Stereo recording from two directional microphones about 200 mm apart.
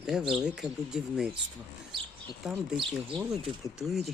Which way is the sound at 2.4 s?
Centre (ahead or behind).